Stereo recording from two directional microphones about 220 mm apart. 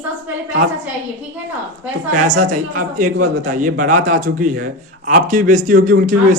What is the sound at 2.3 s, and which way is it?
A man's voice, 35° right (ahead or behind).